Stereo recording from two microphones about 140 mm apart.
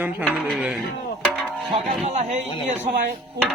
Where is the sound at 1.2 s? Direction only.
5° left (ahead or behind).